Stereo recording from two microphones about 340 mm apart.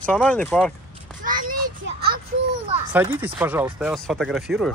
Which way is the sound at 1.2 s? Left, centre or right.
Right.